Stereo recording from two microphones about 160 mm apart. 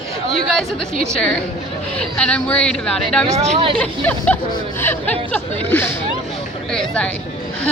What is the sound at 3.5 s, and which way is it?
Speech, 35° right (ahead or behind).